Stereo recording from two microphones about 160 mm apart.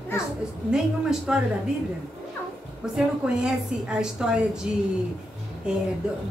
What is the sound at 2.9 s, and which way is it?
A woman's voice, 5° right (ahead or behind).